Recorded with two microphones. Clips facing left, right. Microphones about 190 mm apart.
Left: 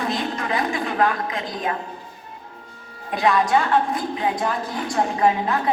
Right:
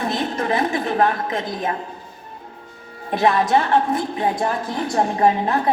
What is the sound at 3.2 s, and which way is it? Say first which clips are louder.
A woman's voice: right 2 dB; 25° right (ahead or behind).